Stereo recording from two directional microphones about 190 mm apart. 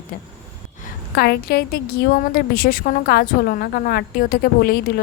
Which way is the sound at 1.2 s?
55° left (ahead or behind).